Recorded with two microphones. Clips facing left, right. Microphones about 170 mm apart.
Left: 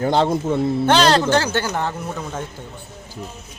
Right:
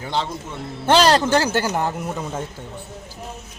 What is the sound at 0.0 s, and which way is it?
Speech, 50° left (ahead or behind).